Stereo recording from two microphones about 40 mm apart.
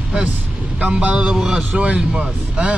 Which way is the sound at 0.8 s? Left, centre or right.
Right.